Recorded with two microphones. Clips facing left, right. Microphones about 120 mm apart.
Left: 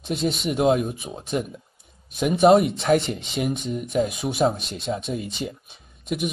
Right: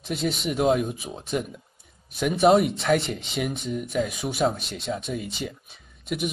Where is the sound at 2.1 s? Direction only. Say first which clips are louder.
Left 3 dB; 20° left (ahead or behind).